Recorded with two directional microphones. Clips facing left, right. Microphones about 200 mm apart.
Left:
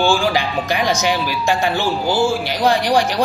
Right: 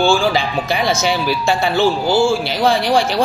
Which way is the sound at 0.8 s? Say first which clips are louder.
Right 2 dB; 15° left (ahead or behind).